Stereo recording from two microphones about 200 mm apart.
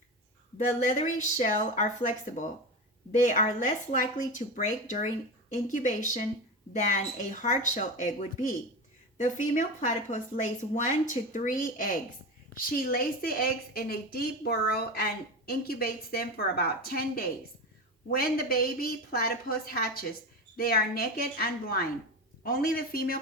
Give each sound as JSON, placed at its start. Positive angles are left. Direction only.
{"t": 0.9, "sound": "a woman's voice", "side_deg": 35}